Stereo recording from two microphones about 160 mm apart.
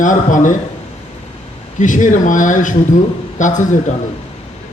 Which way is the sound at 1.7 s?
50° left (ahead or behind).